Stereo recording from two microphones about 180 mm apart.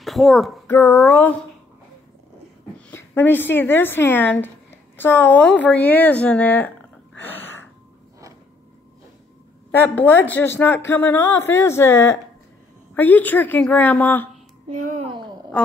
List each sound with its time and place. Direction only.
0.0 s a sound: centre (ahead or behind)
0.7 s speech: 10° left (ahead or behind)
2.9 s a woman's voice: 10° left (ahead or behind)
7.2 s gasp: 10° left (ahead or behind)
9.7 s speech: 10° left (ahead or behind)
14.7 s a child's voice: 40° right (ahead or behind)
15.5 s a woman's voice: 5° left (ahead or behind)